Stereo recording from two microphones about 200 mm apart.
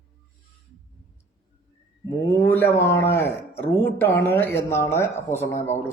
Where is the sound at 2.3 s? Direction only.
10° left (ahead or behind).